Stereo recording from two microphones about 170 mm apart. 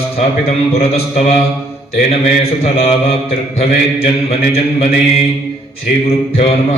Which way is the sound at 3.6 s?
35° left (ahead or behind).